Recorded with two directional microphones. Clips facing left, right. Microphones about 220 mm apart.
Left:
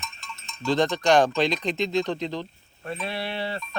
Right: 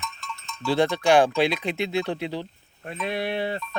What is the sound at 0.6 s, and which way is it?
Speech, 10° right (ahead or behind).